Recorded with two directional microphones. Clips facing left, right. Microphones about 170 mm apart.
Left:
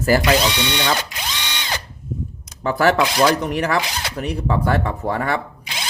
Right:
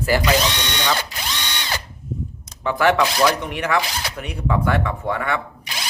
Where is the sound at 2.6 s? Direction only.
40° left (ahead or behind).